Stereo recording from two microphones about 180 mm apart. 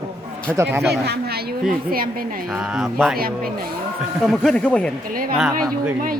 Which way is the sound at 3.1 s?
55° right (ahead or behind).